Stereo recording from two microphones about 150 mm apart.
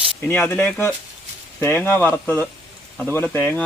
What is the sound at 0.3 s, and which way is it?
Speech, 5° left (ahead or behind).